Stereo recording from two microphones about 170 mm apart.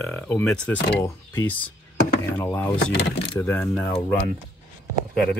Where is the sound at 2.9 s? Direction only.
90° left.